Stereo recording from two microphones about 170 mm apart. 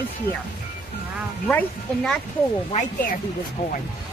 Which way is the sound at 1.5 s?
5° left (ahead or behind).